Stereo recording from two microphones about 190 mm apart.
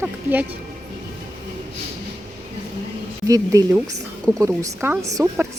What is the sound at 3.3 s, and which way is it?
A woman's voice, 15° right (ahead or behind).